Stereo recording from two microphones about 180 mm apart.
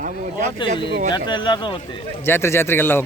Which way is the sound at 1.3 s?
25° left (ahead or behind).